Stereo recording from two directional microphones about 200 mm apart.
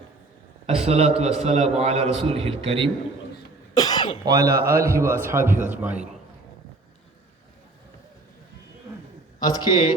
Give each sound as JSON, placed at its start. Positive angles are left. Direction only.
{"t": 0.7, "sound": "a man's voice", "side_deg": -30}
{"t": 3.8, "sound": "cough", "side_deg": 20}
{"t": 4.3, "sound": "a man's voice", "side_deg": -15}
{"t": 9.4, "sound": "a man's voice", "side_deg": 20}